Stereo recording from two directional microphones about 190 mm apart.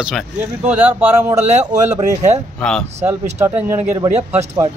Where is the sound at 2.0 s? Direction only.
40° right (ahead or behind).